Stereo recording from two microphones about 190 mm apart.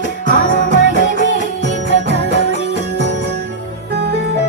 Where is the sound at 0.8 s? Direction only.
75° left (ahead or behind).